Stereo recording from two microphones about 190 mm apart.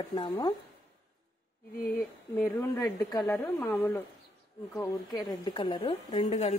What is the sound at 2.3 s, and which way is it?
A woman's voice, 10° left (ahead or behind).